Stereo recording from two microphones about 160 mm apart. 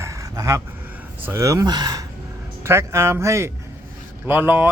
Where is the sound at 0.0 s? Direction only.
20° right (ahead or behind).